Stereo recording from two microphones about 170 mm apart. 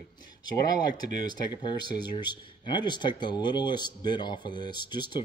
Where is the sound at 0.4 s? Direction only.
25° left (ahead or behind).